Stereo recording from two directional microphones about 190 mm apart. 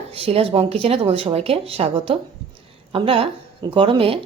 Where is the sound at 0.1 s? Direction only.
30° right (ahead or behind).